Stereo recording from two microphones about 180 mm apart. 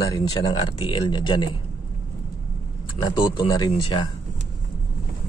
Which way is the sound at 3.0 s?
25° left (ahead or behind).